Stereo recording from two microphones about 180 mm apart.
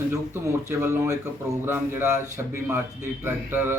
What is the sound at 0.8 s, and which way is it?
Speech, 15° right (ahead or behind).